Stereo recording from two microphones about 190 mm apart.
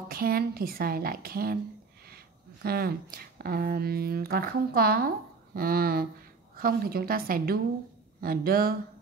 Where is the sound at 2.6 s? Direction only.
55° right (ahead or behind).